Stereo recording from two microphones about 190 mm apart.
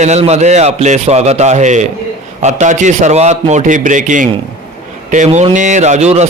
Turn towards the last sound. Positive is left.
turn(degrees=-35)  # may be behind; listen again after turning